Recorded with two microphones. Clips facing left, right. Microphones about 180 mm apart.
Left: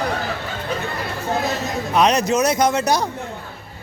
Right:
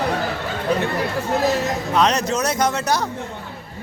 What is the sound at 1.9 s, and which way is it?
Speech, 10° left (ahead or behind).